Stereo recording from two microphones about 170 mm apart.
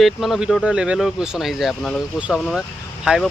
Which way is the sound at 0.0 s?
Centre (ahead or behind).